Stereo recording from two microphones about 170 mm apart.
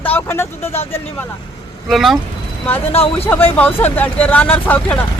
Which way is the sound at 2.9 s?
35° left (ahead or behind).